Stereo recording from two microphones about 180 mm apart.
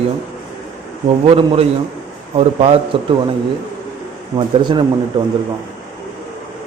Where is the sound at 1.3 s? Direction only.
30° right (ahead or behind).